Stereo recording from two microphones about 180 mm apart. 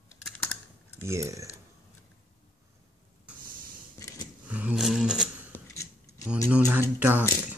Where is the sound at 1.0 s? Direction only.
15° right (ahead or behind).